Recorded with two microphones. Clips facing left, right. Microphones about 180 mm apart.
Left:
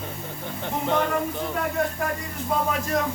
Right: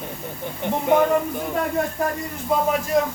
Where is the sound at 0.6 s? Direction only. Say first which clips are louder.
Right 6 dB; 15° right (ahead or behind).